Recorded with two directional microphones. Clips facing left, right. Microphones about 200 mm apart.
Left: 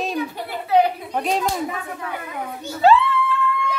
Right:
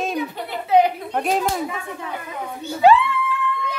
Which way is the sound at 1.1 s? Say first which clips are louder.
Right 1 dB; centre (ahead or behind).